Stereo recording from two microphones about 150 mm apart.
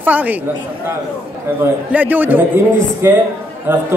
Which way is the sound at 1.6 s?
10° right (ahead or behind).